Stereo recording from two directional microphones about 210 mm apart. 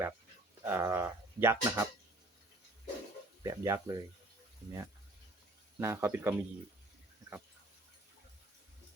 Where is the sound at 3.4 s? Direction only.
15° right (ahead or behind).